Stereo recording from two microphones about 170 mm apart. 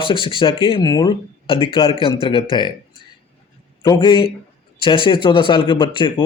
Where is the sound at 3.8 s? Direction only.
30° left (ahead or behind).